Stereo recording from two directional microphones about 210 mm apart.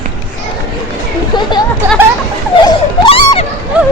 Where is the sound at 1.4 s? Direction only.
20° left (ahead or behind).